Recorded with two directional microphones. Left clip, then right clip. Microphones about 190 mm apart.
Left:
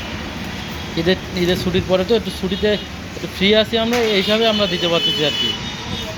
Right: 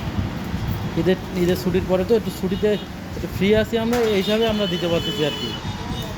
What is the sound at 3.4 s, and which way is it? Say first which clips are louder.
Speech: left 4 dB; 5° right (ahead or behind).